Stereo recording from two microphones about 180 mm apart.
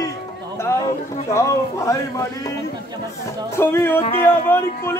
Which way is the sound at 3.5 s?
15° left (ahead or behind).